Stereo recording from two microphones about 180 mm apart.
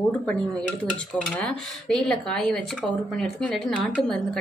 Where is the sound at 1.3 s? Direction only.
5° left (ahead or behind).